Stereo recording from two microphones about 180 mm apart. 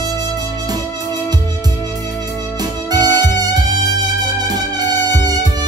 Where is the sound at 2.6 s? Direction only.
20° right (ahead or behind).